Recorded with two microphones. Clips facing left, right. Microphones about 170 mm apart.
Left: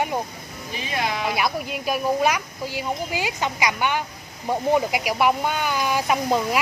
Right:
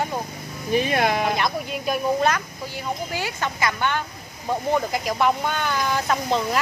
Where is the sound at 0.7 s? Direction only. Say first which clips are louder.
Right 7 dB; 55° right (ahead or behind).